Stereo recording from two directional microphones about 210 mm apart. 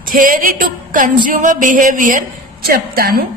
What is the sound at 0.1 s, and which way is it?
A woman's voice, 40° right (ahead or behind).